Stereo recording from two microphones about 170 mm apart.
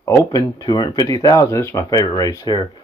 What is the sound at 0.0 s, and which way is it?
Speech, 20° left (ahead or behind).